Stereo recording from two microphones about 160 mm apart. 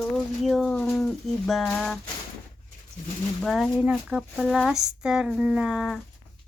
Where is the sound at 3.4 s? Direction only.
Centre (ahead or behind).